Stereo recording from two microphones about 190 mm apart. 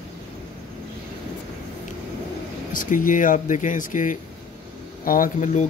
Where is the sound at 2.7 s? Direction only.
45° left (ahead or behind).